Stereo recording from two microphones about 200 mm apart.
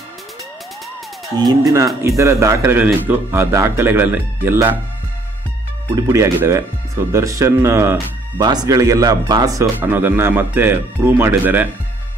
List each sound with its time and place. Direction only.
1.3 s speech: 20° right (ahead or behind)
5.9 s speech: 15° right (ahead or behind)